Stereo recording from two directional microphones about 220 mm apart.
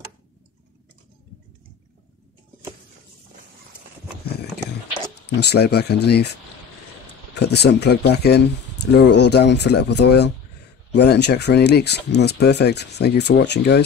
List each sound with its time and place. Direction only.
5.3 s speech: 50° left (ahead or behind)
7.3 s speech: 50° left (ahead or behind)